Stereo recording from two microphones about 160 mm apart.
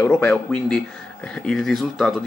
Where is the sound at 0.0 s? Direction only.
15° left (ahead or behind).